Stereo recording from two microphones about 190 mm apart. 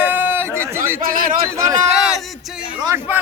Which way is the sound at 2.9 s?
10° right (ahead or behind).